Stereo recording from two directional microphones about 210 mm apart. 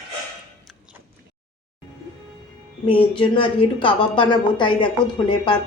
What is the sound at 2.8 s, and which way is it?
A woman's voice, 25° left (ahead or behind).